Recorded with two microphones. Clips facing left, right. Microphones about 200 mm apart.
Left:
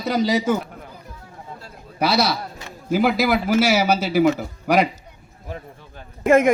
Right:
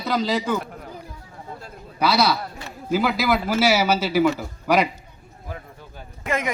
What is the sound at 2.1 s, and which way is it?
Speech, 55° right (ahead or behind).